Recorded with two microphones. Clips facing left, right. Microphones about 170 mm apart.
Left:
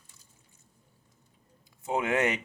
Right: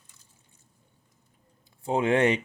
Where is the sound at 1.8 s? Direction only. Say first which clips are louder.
Right 5 dB; 30° right (ahead or behind).